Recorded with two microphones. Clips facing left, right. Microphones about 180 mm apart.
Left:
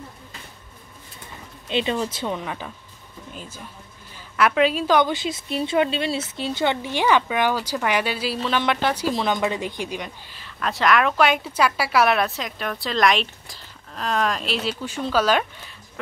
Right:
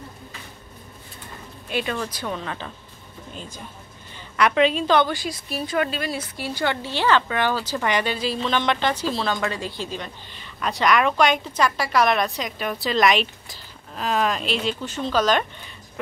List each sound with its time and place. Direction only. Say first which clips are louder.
1.7 s speech: left 3 dB; 20° left (ahead or behind)
4.1 s a woman's voice: even; 5° left (ahead or behind)
5.1 s speech: left 3 dB; 25° left (ahead or behind)
10.3 s speech: even; centre (ahead or behind)